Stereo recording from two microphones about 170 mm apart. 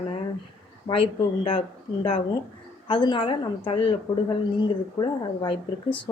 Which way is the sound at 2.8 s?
30° left (ahead or behind).